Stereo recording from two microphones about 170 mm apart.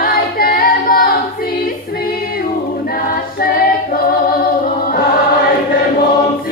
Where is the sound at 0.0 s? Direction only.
60° left (ahead or behind).